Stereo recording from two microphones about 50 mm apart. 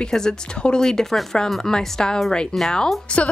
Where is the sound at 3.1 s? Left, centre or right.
Left.